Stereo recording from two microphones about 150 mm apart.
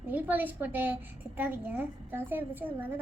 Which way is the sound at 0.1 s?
10° right (ahead or behind).